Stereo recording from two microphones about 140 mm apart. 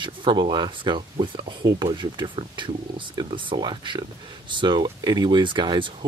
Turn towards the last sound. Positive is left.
turn(degrees=-35)  # may be behind; listen again after turning